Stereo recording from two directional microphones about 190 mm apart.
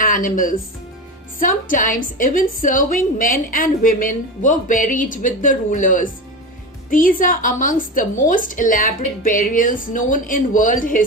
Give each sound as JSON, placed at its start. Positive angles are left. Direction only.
{"t": 0.0, "sound": "a woman's voice", "side_deg": 45}